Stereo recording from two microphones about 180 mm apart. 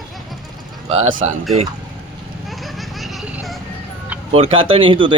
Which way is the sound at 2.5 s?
Centre (ahead or behind).